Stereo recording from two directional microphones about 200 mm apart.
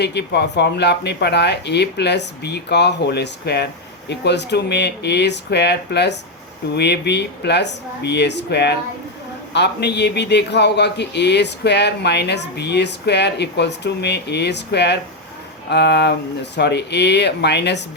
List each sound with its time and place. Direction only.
0.0 s a man's voice: 55° left (ahead or behind)